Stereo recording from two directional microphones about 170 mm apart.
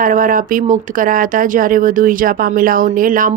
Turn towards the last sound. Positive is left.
turn(degrees=-50)  # may be behind; listen again after turning